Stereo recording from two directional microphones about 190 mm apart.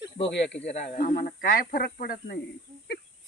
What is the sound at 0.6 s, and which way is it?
Speech, 35° left (ahead or behind).